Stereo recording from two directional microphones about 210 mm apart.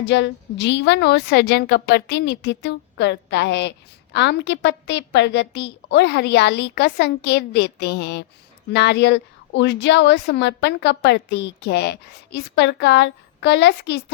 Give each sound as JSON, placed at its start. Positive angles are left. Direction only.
{"t": 0.0, "sound": "a woman's voice", "side_deg": 60}